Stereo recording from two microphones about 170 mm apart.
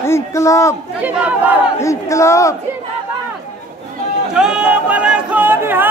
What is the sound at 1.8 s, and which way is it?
Speech, 15° left (ahead or behind).